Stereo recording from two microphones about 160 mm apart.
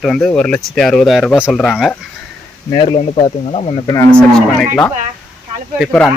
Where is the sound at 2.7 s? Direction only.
30° left (ahead or behind).